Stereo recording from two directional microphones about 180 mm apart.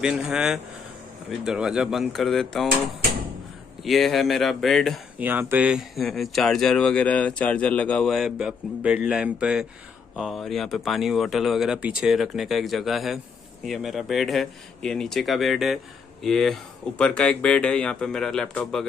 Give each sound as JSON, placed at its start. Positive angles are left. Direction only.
{"t": 0.0, "sound": "speech", "side_deg": -5}
{"t": 3.8, "sound": "speech", "side_deg": 0}
{"t": 5.2, "sound": "speech", "side_deg": -10}